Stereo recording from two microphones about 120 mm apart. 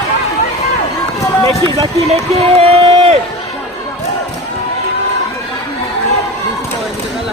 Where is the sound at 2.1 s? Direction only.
60° right (ahead or behind).